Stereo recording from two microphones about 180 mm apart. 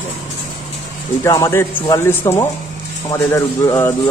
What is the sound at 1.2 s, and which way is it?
A man's voice, 15° left (ahead or behind).